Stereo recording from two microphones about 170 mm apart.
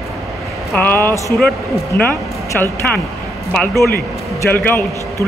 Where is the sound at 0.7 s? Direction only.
10° left (ahead or behind).